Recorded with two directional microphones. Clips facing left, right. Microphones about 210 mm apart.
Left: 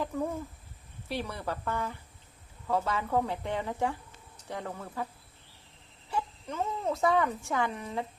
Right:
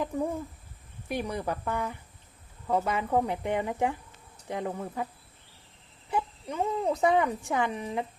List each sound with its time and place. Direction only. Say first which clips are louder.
1.0 s speech: right 4 dB; 15° right (ahead or behind)
6.1 s speech: right 3 dB; 15° right (ahead or behind)